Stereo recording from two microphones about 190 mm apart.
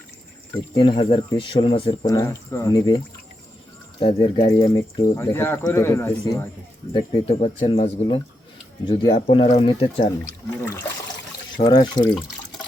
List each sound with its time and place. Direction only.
0.8 s speech: 30° left (ahead or behind)
4.0 s speech: 30° left (ahead or behind)
6.9 s speech: 30° left (ahead or behind)
11.5 s speech: 20° left (ahead or behind)